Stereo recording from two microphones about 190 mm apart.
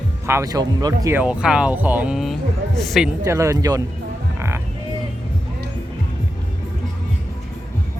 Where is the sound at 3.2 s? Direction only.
15° right (ahead or behind).